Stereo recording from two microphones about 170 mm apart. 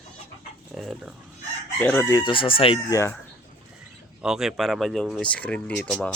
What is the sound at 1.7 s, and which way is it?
Chicken, 10° left (ahead or behind).